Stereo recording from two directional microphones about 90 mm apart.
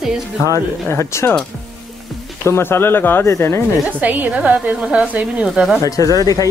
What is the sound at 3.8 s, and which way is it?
A woman's voice, 20° right (ahead or behind).